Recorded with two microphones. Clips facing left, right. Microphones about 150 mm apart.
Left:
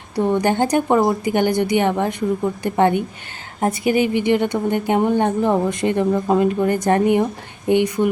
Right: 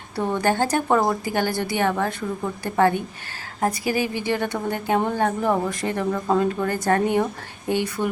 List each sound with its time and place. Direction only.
0.2 s a woman's voice: 15° left (ahead or behind)